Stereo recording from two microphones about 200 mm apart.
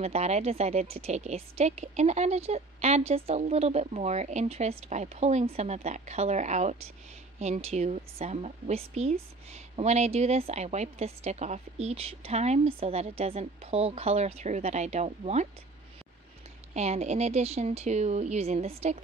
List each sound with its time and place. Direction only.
0.0 s a woman's voice: 30° right (ahead or behind)
16.7 s a woman's voice: 35° right (ahead or behind)